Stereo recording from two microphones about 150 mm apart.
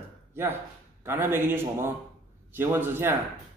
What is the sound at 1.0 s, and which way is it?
A man's voice, 15° right (ahead or behind).